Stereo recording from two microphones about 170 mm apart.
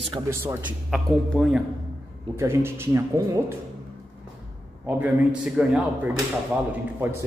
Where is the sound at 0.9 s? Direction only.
Centre (ahead or behind).